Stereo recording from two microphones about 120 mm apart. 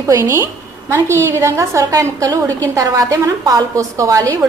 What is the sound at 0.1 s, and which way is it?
A woman's voice, 25° right (ahead or behind).